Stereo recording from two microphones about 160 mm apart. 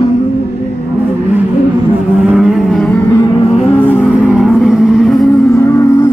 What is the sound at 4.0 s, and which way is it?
Vehicle, 5° right (ahead or behind).